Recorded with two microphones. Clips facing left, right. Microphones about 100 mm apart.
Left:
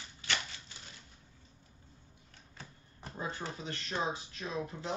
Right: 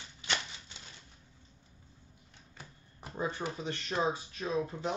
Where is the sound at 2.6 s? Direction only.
10° right (ahead or behind).